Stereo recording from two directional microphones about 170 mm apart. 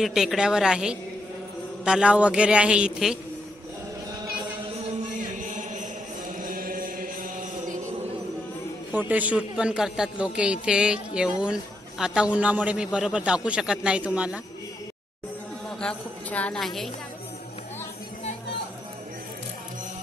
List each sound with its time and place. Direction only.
0.0 s a man's voice: centre (ahead or behind)
5.6 s music: 50° right (ahead or behind)
8.9 s a man's voice: 10° right (ahead or behind)
15.8 s speech: 5° left (ahead or behind)